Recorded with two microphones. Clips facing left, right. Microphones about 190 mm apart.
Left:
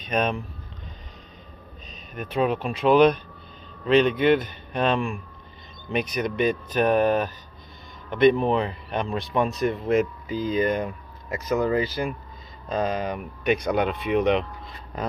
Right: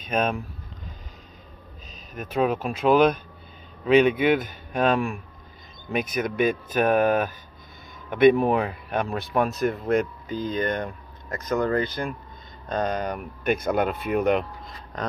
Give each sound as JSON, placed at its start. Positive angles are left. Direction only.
{"t": 0.0, "sound": "speech", "side_deg": -5}
{"t": 2.1, "sound": "speech", "side_deg": -5}